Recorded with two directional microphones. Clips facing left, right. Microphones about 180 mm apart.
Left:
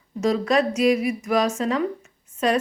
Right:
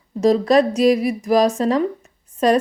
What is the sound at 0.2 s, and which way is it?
A woman's voice, 35° right (ahead or behind).